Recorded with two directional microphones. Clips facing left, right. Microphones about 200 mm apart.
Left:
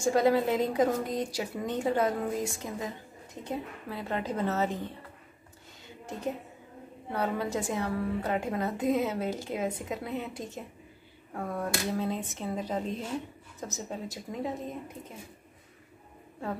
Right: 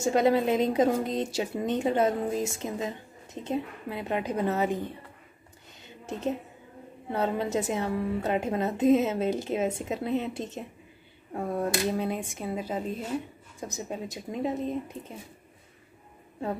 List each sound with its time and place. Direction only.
0.0 s a woman's voice: 20° right (ahead or behind)
7.1 s a woman's voice: 25° right (ahead or behind)